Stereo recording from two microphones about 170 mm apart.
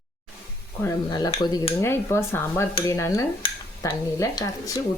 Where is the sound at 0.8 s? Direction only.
20° left (ahead or behind).